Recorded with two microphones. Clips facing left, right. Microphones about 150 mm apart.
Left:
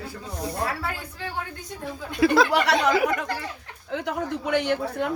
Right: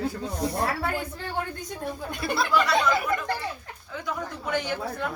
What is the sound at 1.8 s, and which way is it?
Speech, 90° left.